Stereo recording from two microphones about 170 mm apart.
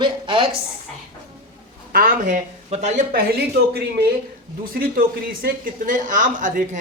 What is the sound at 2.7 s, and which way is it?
Speech, 45° right (ahead or behind).